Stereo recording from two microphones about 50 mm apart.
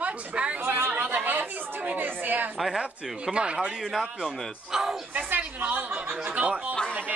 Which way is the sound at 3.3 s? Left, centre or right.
Right.